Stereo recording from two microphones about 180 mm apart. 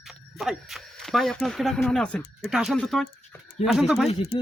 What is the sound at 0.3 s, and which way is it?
Speech, centre (ahead or behind).